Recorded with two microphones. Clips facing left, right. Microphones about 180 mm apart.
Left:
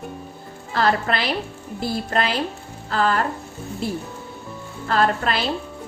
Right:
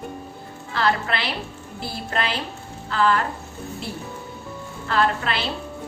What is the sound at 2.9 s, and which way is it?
Speech, 40° left (ahead or behind).